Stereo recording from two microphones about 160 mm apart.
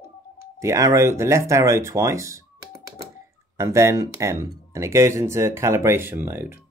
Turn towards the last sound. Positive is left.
turn(degrees=-15)  # may be behind; listen again after turning